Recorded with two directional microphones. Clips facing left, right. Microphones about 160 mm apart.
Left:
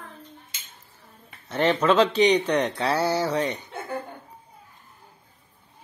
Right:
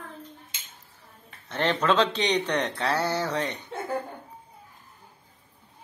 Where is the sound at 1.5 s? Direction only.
5° left (ahead or behind).